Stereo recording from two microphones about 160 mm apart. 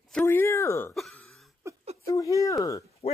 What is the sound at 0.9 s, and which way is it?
Throat clearing, centre (ahead or behind).